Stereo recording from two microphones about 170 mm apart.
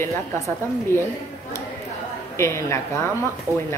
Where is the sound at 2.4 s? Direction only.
15° left (ahead or behind).